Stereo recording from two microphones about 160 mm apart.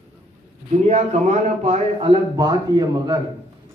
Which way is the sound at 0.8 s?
45° right (ahead or behind).